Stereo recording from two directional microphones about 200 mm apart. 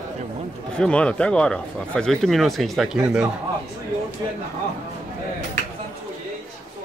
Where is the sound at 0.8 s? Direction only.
5° left (ahead or behind).